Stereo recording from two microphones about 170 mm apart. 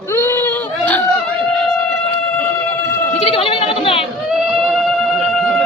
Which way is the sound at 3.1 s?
35° left (ahead or behind).